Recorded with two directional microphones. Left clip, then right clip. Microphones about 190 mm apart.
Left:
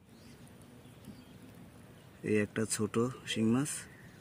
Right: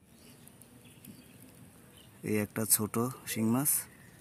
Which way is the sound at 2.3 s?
25° right (ahead or behind).